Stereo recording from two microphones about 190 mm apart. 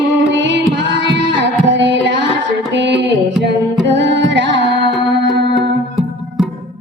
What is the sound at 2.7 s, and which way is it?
Music, 65° right (ahead or behind).